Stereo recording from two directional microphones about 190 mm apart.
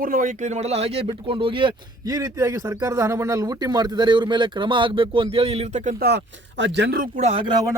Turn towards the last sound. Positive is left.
turn(degrees=-20)  # may be behind; listen again after turning